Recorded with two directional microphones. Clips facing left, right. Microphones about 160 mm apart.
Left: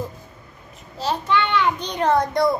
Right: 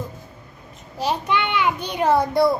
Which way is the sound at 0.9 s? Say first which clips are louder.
Even; 15° right (ahead or behind).